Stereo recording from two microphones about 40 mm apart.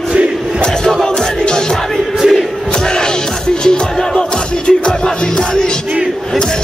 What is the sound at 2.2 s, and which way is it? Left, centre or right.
Music, centre.